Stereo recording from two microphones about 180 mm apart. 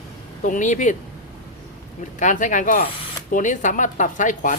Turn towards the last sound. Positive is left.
turn(degrees=45)  # may be behind; listen again after turning